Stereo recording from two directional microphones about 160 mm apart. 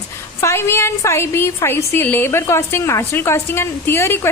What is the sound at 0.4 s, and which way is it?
A woman's voice, 15° left (ahead or behind).